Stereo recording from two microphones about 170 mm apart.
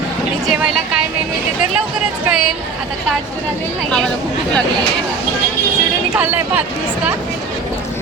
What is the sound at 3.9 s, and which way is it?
Speech, 5° left (ahead or behind).